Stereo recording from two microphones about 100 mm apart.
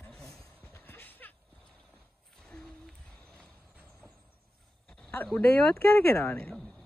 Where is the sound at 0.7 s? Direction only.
20° left (ahead or behind).